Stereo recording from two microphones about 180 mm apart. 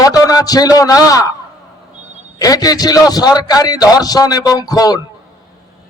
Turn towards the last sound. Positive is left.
turn(degrees=20)  # may be behind; listen again after turning